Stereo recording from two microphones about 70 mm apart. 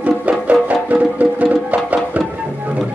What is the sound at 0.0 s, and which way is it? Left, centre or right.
Music, right.